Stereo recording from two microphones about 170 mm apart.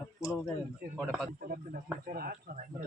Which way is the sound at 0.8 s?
55° right (ahead or behind).